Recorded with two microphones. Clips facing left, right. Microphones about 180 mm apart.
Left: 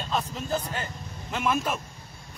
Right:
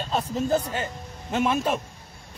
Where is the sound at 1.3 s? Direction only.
35° right (ahead or behind).